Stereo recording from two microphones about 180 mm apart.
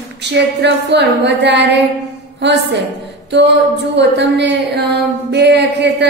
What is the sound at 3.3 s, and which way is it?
A woman's voice, 75° right (ahead or behind).